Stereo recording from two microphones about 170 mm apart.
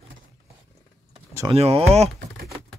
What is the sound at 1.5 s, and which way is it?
Speech, 35° right (ahead or behind).